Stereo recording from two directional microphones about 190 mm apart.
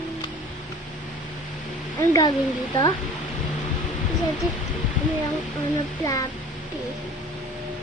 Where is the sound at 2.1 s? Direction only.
20° left (ahead or behind).